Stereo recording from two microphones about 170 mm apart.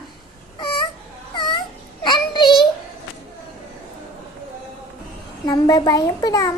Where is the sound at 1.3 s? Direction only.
25° left (ahead or behind).